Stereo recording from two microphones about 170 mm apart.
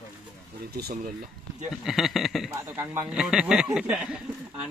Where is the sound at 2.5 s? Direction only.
10° right (ahead or behind).